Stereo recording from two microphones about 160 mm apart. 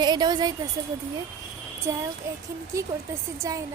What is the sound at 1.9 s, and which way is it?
A woman's voice, 15° right (ahead or behind).